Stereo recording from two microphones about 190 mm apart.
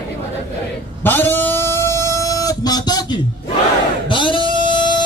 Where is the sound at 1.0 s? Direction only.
10° left (ahead or behind).